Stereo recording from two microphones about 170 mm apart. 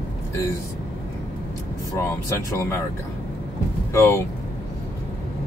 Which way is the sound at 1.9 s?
15° left (ahead or behind).